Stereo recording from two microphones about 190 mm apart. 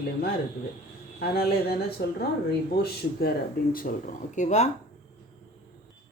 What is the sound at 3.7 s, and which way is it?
Speech, 50° left (ahead or behind).